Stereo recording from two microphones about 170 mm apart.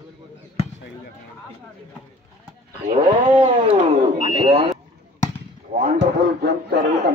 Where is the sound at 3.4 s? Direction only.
35° right (ahead or behind).